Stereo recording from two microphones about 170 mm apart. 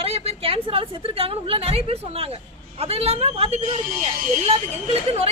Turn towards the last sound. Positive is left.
turn(degrees=-35)  # may be behind; listen again after turning